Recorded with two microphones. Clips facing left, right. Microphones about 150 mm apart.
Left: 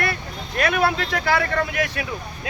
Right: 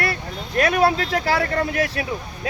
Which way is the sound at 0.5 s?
35° right (ahead or behind).